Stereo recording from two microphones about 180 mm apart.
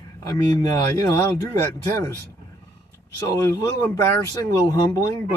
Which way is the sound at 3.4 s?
15° left (ahead or behind).